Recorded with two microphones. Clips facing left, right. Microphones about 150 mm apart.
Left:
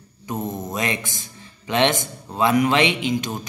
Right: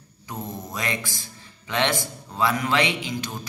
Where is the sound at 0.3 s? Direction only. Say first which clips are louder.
Left 6 dB; 20° left (ahead or behind).